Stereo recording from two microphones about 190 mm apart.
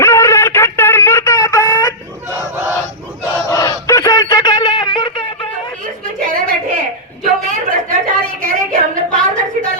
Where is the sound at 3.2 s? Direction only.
20° left (ahead or behind).